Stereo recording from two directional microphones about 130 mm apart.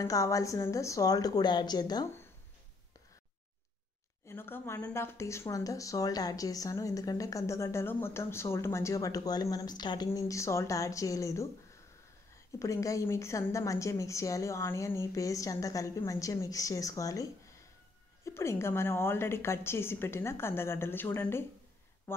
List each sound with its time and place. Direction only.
0.0 s speech: 25° left (ahead or behind)
4.3 s speech: 20° left (ahead or behind)
12.5 s speech: 25° left (ahead or behind)